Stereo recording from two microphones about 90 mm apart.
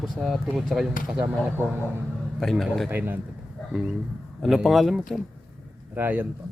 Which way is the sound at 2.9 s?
20° right (ahead or behind).